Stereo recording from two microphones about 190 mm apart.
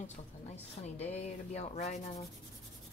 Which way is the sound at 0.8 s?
35° left (ahead or behind).